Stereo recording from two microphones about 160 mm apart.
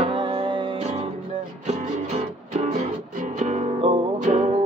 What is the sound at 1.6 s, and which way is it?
Music, 45° right (ahead or behind).